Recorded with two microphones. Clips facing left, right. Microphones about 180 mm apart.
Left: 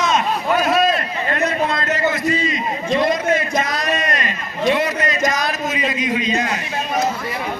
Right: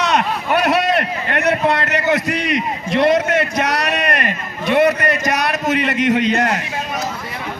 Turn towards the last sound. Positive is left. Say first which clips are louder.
# right 4 dB
turn(degrees=-70)  # may be behind; listen again after turning